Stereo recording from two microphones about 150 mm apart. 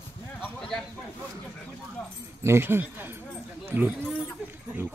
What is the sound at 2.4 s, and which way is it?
Speech, 15° right (ahead or behind).